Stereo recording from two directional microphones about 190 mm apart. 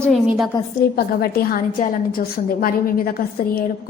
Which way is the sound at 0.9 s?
50° left (ahead or behind).